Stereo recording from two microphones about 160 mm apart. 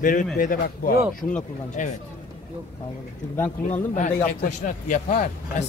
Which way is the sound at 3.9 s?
45° left (ahead or behind).